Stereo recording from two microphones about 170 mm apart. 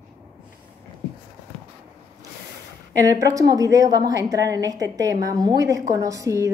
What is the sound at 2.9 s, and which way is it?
A woman's voice, 20° right (ahead or behind).